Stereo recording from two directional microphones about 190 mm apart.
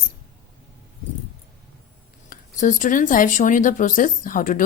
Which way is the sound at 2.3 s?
45° left (ahead or behind).